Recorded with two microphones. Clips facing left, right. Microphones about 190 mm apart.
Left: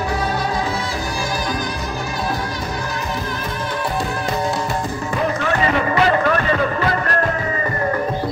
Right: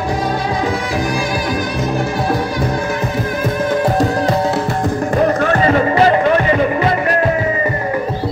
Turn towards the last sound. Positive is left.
turn(degrees=-20)  # may be behind; listen again after turning